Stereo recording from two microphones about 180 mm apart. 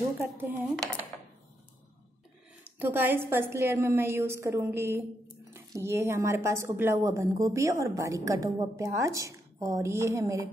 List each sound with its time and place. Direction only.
0.2 s a woman's voice: 10° right (ahead or behind)
2.8 s a woman's voice: 10° right (ahead or behind)